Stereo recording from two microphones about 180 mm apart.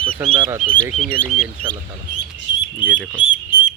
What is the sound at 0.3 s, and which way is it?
Speech, 30° right (ahead or behind).